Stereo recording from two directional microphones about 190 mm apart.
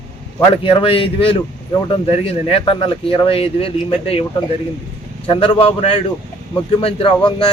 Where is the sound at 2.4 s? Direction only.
30° left (ahead or behind).